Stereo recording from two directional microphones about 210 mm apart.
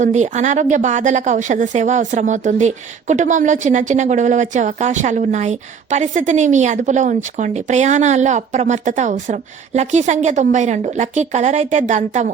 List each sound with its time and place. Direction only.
0.0 s a woman's voice: 35° right (ahead or behind)